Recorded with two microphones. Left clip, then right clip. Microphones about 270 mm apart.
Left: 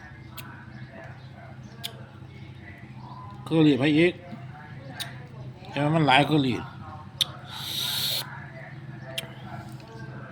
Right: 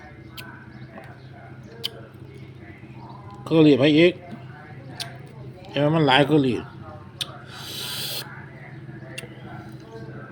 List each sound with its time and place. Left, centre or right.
1.8 s a sound: centre
3.4 s speech: centre
5.7 s speech: centre
7.5 s owl: centre